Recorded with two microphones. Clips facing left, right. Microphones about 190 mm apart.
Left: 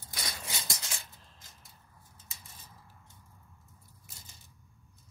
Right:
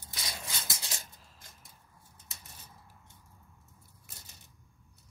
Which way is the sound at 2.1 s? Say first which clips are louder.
Right 1 dB; 65° right (ahead or behind).